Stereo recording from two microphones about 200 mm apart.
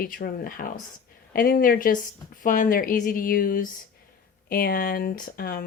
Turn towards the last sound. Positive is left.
turn(degrees=45)  # may be behind; listen again after turning